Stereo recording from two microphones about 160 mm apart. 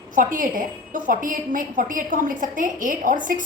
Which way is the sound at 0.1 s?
55° right (ahead or behind).